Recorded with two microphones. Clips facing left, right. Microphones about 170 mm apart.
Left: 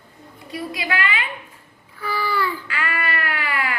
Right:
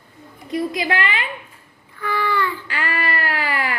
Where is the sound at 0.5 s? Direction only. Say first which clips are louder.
Right 5 dB; 30° right (ahead or behind).